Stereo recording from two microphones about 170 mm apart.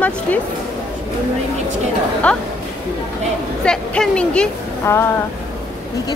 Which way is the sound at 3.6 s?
5° left (ahead or behind).